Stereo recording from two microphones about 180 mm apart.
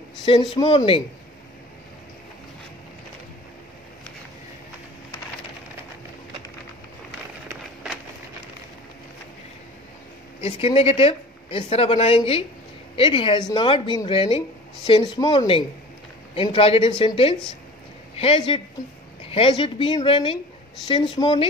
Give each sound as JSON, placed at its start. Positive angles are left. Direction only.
{"t": 0.2, "sound": "a woman's voice", "side_deg": 25}
{"t": 10.4, "sound": "a woman's voice", "side_deg": 30}